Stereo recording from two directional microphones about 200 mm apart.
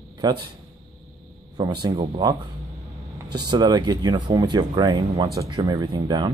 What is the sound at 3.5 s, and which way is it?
Speech, 20° right (ahead or behind).